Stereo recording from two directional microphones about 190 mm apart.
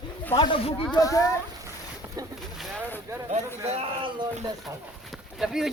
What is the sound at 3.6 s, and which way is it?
Speech, 30° right (ahead or behind).